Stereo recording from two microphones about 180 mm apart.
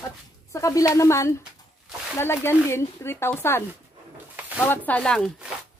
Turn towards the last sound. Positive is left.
turn(degrees=5)  # may be behind; listen again after turning